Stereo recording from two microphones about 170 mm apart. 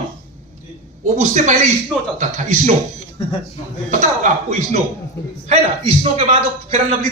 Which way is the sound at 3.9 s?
45° right (ahead or behind).